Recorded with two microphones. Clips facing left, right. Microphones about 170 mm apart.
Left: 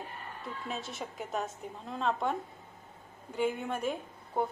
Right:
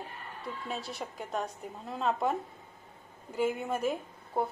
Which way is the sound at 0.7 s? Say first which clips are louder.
Even; centre (ahead or behind).